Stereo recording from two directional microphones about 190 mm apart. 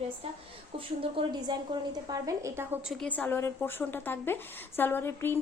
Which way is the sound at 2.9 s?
5° left (ahead or behind).